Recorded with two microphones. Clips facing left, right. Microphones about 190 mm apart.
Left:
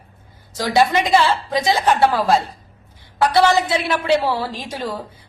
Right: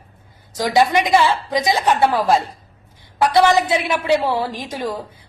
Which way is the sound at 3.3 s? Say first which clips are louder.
Right 1 dB; 20° right (ahead or behind).